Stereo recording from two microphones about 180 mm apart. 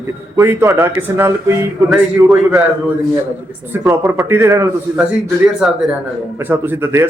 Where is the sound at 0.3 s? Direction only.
15° right (ahead or behind).